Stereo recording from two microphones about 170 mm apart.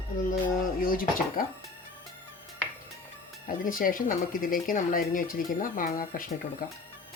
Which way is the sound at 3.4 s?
55° left (ahead or behind).